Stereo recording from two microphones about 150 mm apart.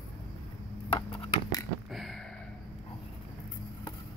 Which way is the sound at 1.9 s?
Centre (ahead or behind).